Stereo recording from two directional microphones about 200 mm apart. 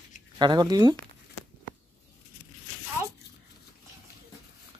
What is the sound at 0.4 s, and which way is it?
Speech, 20° right (ahead or behind).